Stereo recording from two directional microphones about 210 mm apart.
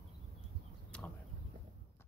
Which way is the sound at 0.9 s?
5° left (ahead or behind).